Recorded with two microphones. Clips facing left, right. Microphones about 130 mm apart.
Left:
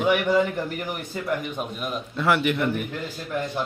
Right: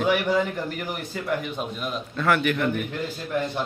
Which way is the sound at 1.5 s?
15° left (ahead or behind).